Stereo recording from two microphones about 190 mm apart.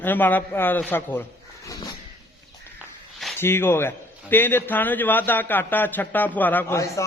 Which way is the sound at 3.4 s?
10° left (ahead or behind).